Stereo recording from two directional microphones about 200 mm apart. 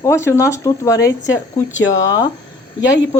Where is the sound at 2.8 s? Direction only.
65° left (ahead or behind).